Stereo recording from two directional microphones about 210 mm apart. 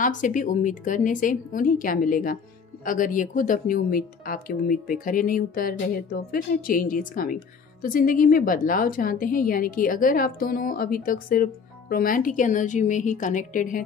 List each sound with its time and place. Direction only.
0.0 s a woman's voice: 40° left (ahead or behind)